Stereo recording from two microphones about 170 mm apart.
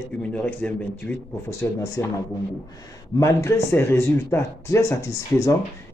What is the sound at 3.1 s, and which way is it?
Speech, 15° left (ahead or behind).